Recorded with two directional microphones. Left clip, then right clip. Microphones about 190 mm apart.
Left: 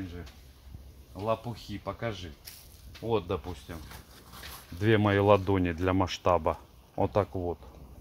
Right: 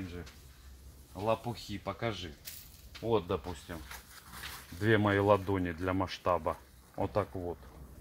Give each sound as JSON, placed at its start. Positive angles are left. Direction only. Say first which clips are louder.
{"t": 1.1, "sound": "speech", "louder": "left 1 dB", "side_deg": 5}
{"t": 2.9, "sound": "speech", "louder": "left 1 dB", "side_deg": 15}
{"t": 4.7, "sound": "speech", "louder": "left 3 dB", "side_deg": 40}